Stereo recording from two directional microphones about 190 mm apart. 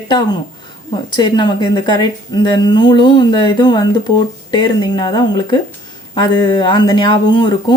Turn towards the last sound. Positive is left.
turn(degrees=25)  # may be behind; listen again after turning